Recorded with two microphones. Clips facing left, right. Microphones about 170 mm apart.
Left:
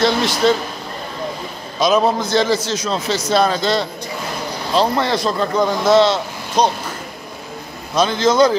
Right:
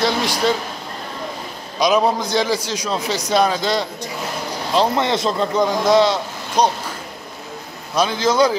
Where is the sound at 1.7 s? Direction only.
15° right (ahead or behind).